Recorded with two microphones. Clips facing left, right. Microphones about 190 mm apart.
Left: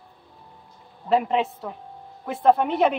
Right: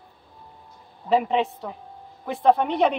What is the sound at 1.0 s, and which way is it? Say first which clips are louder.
A woman's voice: even; centre (ahead or behind).